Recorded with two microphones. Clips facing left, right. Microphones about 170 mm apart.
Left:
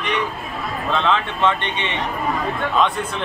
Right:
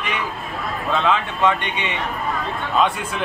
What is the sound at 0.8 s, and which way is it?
Speech, 10° right (ahead or behind).